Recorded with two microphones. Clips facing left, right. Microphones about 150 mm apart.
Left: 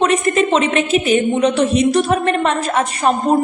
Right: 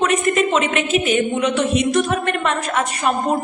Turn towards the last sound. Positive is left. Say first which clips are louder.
# left 4 dB
turn(degrees=35)  # may be behind; listen again after turning